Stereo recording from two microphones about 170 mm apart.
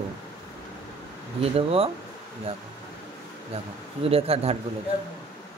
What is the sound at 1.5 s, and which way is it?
Speech, 35° right (ahead or behind).